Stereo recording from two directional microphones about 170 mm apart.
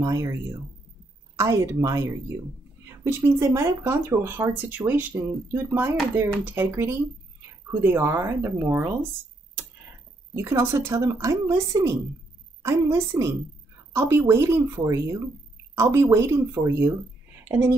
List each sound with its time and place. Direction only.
0.0 s speech: 20° right (ahead or behind)
10.3 s speech: 15° right (ahead or behind)